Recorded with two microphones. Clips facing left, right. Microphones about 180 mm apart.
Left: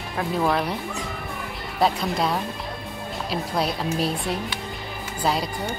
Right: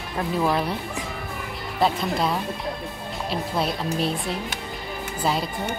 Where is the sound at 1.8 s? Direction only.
Centre (ahead or behind).